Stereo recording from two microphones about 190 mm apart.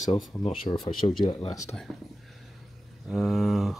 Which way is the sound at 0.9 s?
25° left (ahead or behind).